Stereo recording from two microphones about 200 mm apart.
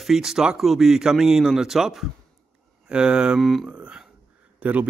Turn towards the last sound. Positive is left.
turn(degrees=-10)  # may be behind; listen again after turning